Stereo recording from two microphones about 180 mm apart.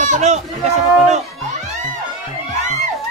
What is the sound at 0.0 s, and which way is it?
Speech, 40° right (ahead or behind).